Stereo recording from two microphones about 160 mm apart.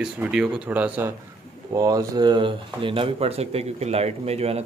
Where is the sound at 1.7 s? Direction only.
20° right (ahead or behind).